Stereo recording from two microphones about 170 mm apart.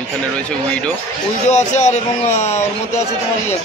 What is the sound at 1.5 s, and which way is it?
A man's voice, 45° left (ahead or behind).